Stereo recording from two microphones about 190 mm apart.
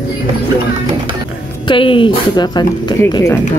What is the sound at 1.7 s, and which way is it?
Speech, 25° left (ahead or behind).